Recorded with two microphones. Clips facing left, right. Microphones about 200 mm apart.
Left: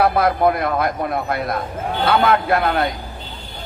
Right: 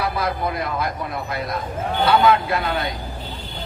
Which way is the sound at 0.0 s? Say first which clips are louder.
Left 8 dB; 55° left (ahead or behind).